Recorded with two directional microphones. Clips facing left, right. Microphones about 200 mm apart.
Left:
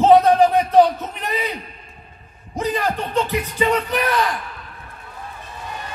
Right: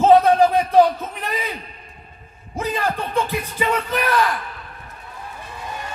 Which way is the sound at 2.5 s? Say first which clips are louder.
Left 1 dB; 15° left (ahead or behind).